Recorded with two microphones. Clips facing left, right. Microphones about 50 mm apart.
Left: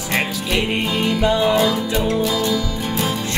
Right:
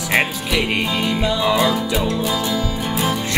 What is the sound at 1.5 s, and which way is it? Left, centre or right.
Music, centre.